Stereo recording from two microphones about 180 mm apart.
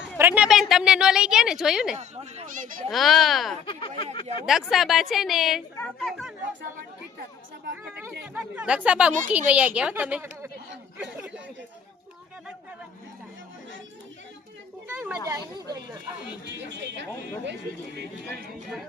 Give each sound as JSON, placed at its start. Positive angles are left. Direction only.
{"t": 0.2, "sound": "a woman's voice", "side_deg": -10}
{"t": 2.0, "sound": "speech", "side_deg": -40}
{"t": 2.9, "sound": "a woman's voice", "side_deg": 0}
{"t": 3.7, "sound": "speech", "side_deg": 30}
{"t": 4.4, "sound": "a woman's voice", "side_deg": 0}
{"t": 8.2, "sound": "a woman's voice", "side_deg": -10}
{"t": 14.8, "sound": "a woman's voice", "side_deg": -10}
{"t": 16.6, "sound": "speech", "side_deg": -75}